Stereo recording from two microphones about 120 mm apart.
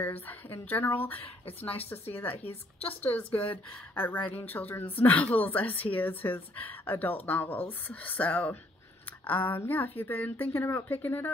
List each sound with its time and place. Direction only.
0.0 s speech: 15° left (ahead or behind)
2.3 s a woman's voice: 55° left (ahead or behind)
2.9 s speech: 15° left (ahead or behind)